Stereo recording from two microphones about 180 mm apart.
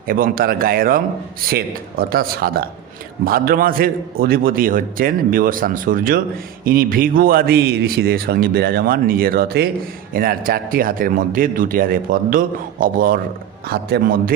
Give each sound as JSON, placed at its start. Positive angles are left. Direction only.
{"t": 0.1, "sound": "a man's voice", "side_deg": -55}